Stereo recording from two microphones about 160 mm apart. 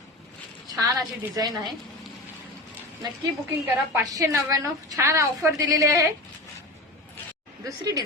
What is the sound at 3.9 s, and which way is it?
A woman's voice, 20° right (ahead or behind).